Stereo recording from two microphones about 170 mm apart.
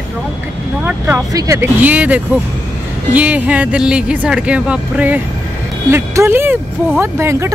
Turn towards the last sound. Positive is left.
turn(degrees=-15)  # may be behind; listen again after turning